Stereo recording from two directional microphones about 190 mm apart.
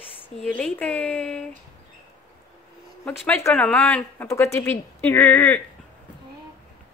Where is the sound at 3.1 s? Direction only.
5° left (ahead or behind).